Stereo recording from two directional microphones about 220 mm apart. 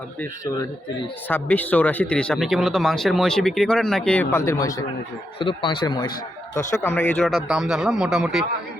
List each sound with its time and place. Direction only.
0.2 s a man's voice: 15° left (ahead or behind); by 8.4 s centre (ahead or behind)